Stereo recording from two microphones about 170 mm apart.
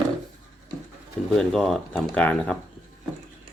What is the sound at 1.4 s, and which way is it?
Speech, centre (ahead or behind).